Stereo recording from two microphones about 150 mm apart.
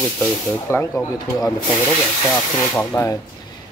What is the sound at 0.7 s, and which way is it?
Speech, 15° left (ahead or behind).